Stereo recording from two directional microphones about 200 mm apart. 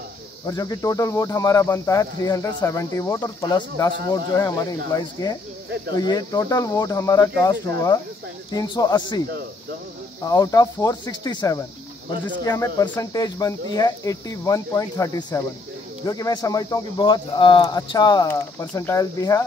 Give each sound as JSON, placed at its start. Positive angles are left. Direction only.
{"t": 0.5, "sound": "speech", "side_deg": 15}
{"t": 10.2, "sound": "speech", "side_deg": 15}